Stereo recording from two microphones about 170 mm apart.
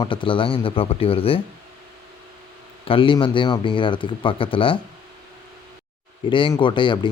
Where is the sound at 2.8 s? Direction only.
30° left (ahead or behind).